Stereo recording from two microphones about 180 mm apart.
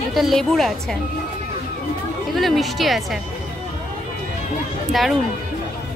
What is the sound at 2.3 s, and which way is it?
Speech, centre (ahead or behind).